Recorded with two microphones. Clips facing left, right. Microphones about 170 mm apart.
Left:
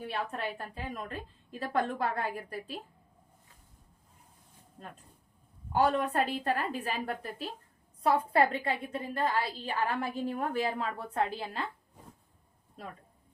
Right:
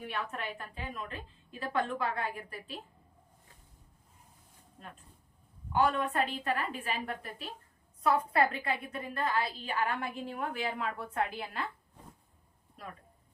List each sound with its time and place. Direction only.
0.0 s a woman's voice: 35° left (ahead or behind)
5.7 s a woman's voice: 35° left (ahead or behind)